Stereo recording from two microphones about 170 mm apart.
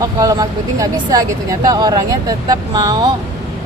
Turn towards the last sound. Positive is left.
turn(degrees=-25)  # may be behind; listen again after turning